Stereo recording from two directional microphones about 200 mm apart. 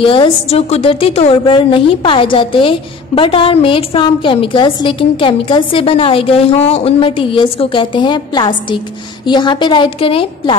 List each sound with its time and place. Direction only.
0.0 s a woman's voice: 25° left (ahead or behind)